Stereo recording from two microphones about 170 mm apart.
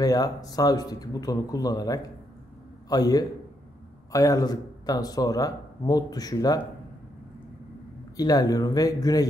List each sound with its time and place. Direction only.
0.0 s speech: 20° left (ahead or behind)
8.2 s speech: 20° left (ahead or behind)